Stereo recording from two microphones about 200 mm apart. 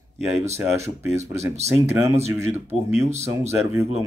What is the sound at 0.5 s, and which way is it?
Speech, 15° right (ahead or behind).